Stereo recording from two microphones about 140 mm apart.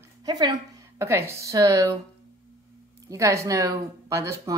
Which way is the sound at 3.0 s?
20° right (ahead or behind).